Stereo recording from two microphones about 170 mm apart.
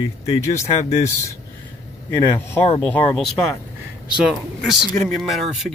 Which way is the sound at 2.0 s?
20° left (ahead or behind).